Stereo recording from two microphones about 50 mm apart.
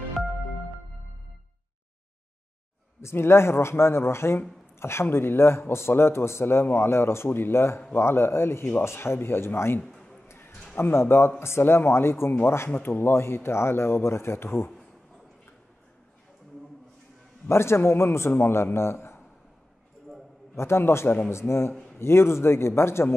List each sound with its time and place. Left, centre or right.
3.0 s a man's voice: left
7.2 s a man's voice: left
9.8 s a sound: centre
10.2 s a sound: left
10.8 s a man's voice: left
12.7 s a man's voice: left
17.5 s a man's voice: left
20.5 s a man's voice: left